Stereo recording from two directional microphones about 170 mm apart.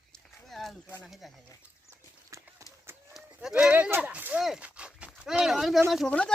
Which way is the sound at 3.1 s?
5° right (ahead or behind).